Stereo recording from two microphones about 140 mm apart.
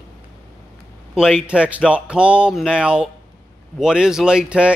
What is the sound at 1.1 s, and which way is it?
A man's voice, 5° right (ahead or behind).